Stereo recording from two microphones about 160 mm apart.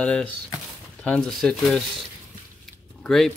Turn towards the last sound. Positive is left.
turn(degrees=0)  # may be behind; listen again after turning